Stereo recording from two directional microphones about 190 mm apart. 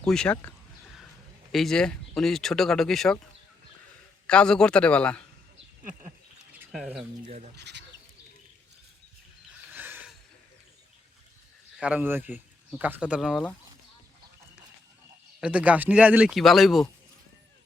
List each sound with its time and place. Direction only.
0.0 s speech: 5° left (ahead or behind)
1.5 s speech: centre (ahead or behind)
4.3 s speech: 5° left (ahead or behind)
6.7 s speech: centre (ahead or behind)
7.2 s speech: 40° right (ahead or behind)
7.5 s speech: 65° right (ahead or behind)
9.7 s a sound: 10° right (ahead or behind)
11.8 s speech: 5° right (ahead or behind)
15.4 s speech: 5° right (ahead or behind)